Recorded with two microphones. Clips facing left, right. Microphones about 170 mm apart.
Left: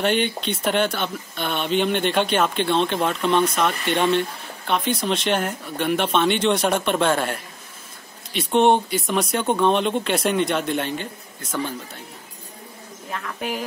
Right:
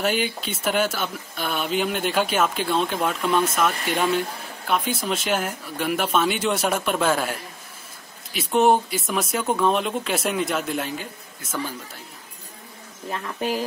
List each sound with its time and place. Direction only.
0.0 s speech: 5° right (ahead or behind)
13.1 s speech: 30° right (ahead or behind)